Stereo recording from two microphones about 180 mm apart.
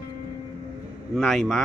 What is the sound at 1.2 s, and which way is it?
Speech, centre (ahead or behind).